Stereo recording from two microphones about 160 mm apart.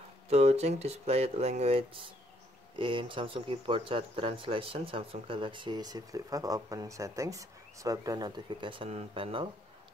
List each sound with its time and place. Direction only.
0.3 s speech: 40° right (ahead or behind)